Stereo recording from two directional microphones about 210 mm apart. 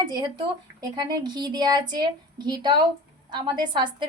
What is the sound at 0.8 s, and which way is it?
A woman's voice, 20° right (ahead or behind).